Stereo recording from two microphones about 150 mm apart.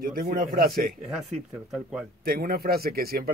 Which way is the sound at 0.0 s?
80° right.